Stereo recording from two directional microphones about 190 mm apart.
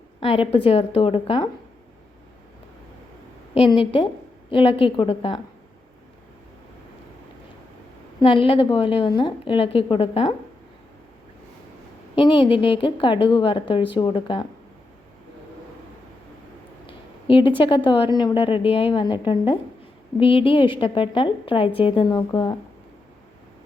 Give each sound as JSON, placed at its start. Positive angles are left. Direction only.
{"t": 0.2, "sound": "a woman's voice", "side_deg": 30}
{"t": 3.5, "sound": "a woman's voice", "side_deg": 30}
{"t": 8.2, "sound": "a woman's voice", "side_deg": 25}
{"t": 12.1, "sound": "a woman's voice", "side_deg": 25}
{"t": 17.2, "sound": "a woman's voice", "side_deg": 25}